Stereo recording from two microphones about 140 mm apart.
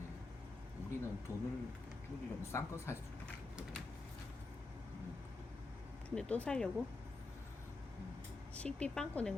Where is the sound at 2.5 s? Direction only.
20° left (ahead or behind).